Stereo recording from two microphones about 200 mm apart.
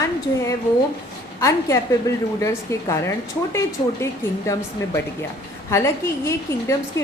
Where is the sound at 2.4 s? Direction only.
15° left (ahead or behind).